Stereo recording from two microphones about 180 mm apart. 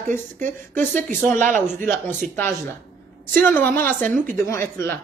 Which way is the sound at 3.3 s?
10° left (ahead or behind).